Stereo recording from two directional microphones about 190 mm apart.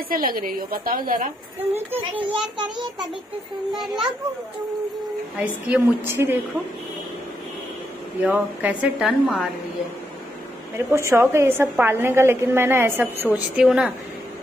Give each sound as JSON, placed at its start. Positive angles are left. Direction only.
{"t": 0.1, "sound": "a woman's voice", "side_deg": -50}
{"t": 3.8, "sound": "a child's voice", "side_deg": 0}
{"t": 5.4, "sound": "a woman's voice", "side_deg": -10}
{"t": 8.2, "sound": "a woman's voice", "side_deg": -10}
{"t": 10.9, "sound": "a woman's voice", "side_deg": -15}